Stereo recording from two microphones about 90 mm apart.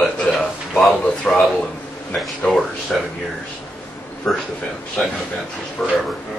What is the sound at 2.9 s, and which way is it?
Speech, 5° left (ahead or behind).